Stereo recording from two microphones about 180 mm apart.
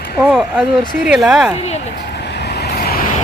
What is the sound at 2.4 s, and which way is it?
Vehicle, 65° left (ahead or behind).